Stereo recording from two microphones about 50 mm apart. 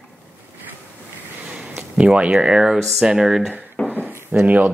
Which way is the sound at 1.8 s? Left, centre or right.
Right.